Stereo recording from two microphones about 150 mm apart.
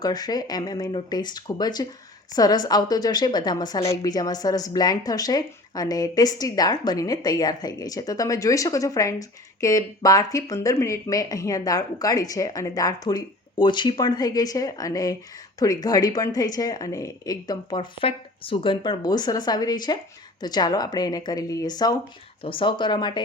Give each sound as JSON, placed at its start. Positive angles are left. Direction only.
{"t": 0.0, "sound": "a woman's voice", "side_deg": 25}